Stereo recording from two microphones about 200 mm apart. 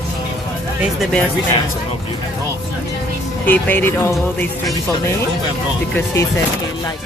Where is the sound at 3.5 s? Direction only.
10° left (ahead or behind).